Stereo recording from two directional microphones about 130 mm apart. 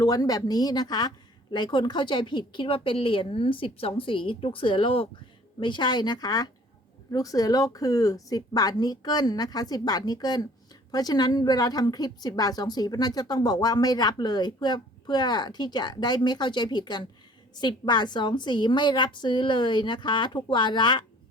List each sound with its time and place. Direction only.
0.0 s a woman's voice: 30° left (ahead or behind)